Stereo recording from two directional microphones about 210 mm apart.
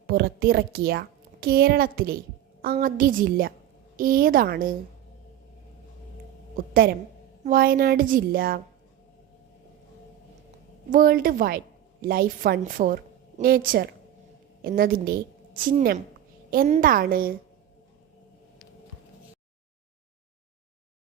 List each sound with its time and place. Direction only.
0.1 s a woman's voice: 45° right (ahead or behind)
7.4 s a woman's voice: 45° right (ahead or behind)
10.8 s a woman's voice: 40° right (ahead or behind)